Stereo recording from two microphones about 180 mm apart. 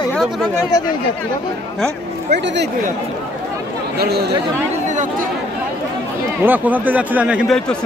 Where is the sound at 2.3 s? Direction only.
75° right (ahead or behind).